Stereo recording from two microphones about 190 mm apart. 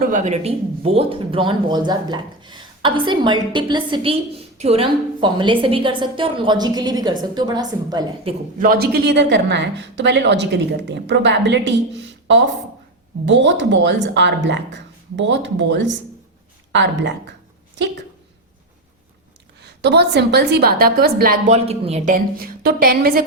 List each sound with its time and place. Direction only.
0.1 s speech: 40° right (ahead or behind)
8.5 s a woman's voice: 50° right (ahead or behind); by 11.7 s 70° right (ahead or behind)
13.2 s speech: 70° right (ahead or behind)
19.6 s a woman's voice: 60° right (ahead or behind)